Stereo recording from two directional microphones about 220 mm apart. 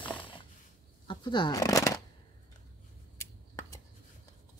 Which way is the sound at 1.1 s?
20° left (ahead or behind).